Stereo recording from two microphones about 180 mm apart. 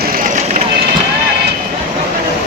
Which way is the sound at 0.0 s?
50° right (ahead or behind).